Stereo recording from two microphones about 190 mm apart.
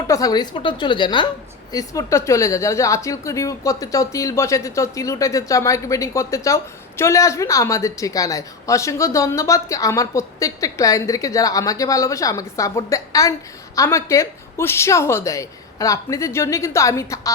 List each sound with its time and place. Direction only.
0.1 s a woman's voice: 20° left (ahead or behind)